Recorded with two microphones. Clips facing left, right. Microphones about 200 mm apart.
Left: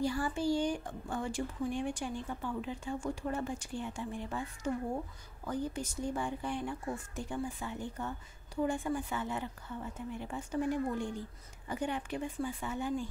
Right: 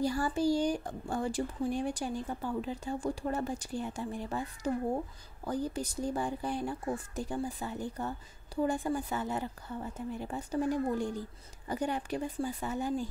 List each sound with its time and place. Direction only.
0.0 s speech: 40° right (ahead or behind)